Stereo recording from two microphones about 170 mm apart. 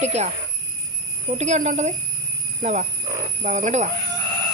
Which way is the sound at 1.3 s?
45° right (ahead or behind).